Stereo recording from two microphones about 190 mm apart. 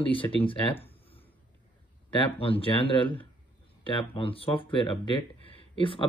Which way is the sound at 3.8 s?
30° left (ahead or behind).